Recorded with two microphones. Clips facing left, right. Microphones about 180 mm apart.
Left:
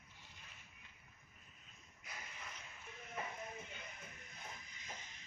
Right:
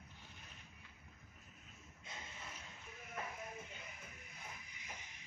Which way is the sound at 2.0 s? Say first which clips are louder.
Right 1 dB; 25° right (ahead or behind).